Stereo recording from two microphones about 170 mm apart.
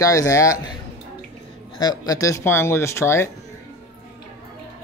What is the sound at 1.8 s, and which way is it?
Speech, 20° left (ahead or behind).